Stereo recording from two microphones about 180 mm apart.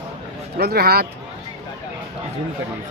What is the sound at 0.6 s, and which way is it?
Speech, 60° right (ahead or behind).